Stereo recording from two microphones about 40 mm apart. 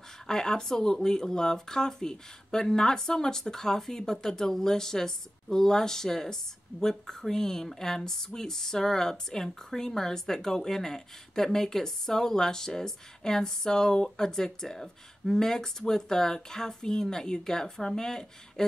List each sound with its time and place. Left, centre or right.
0.3 s speech: centre